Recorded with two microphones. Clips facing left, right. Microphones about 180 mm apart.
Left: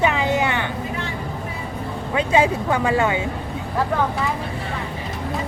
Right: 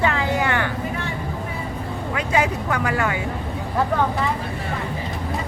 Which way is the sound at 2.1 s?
25° left (ahead or behind).